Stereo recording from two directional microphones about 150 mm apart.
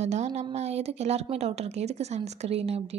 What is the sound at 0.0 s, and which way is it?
A woman's voice, 50° right (ahead or behind).